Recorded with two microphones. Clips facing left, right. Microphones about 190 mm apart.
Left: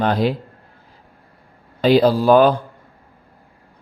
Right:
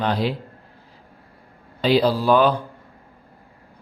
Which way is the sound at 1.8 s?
50° left (ahead or behind).